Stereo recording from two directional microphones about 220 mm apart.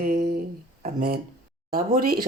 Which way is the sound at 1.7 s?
40° right (ahead or behind).